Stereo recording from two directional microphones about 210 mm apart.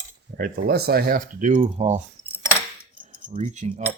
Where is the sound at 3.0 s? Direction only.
35° right (ahead or behind).